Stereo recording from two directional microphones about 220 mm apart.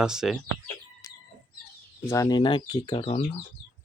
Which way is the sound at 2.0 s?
15° left (ahead or behind).